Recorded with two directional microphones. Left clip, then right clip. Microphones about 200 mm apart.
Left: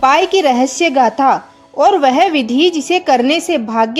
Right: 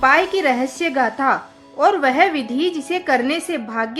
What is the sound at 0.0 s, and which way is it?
A woman's voice, 35° left (ahead or behind).